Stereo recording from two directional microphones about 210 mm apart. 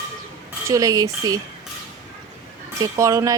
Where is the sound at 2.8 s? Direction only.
15° right (ahead or behind).